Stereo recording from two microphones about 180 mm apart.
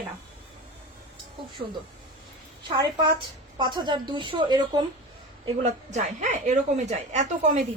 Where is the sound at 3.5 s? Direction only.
25° right (ahead or behind).